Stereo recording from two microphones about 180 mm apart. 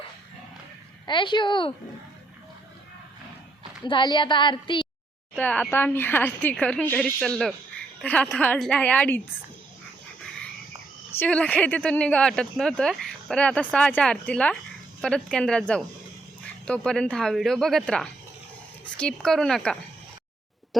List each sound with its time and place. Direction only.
1.0 s a woman's voice: 25° left (ahead or behind)
3.8 s a woman's voice: 25° left (ahead or behind)
5.4 s a woman's voice: 10° left (ahead or behind)
11.1 s speech: 10° left (ahead or behind)